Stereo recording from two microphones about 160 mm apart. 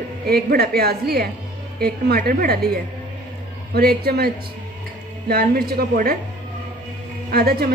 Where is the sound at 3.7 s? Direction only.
75° right (ahead or behind).